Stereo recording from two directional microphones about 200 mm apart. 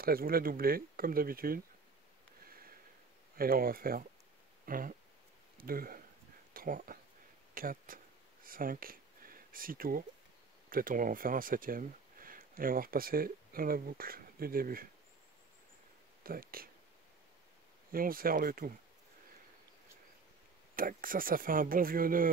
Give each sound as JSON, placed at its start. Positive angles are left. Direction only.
{"t": 0.0, "sound": "speech", "side_deg": -50}
{"t": 2.4, "sound": "a sound", "side_deg": -45}
{"t": 3.3, "sound": "speech", "side_deg": -45}
{"t": 7.5, "sound": "a sound", "side_deg": -45}
{"t": 8.5, "sound": "speech", "side_deg": -45}
{"t": 16.3, "sound": "speech", "side_deg": -45}
{"t": 17.9, "sound": "speech", "side_deg": -45}
{"t": 20.7, "sound": "speech", "side_deg": -45}